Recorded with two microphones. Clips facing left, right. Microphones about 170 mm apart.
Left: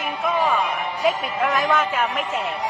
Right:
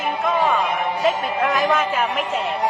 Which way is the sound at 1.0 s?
Centre (ahead or behind).